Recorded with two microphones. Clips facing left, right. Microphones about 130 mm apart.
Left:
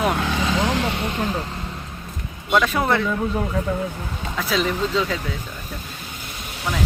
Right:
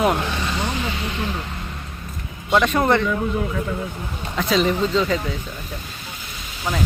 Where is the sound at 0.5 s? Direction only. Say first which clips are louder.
Left 4 dB; 90° left; by 1.5 s 40° left (ahead or behind).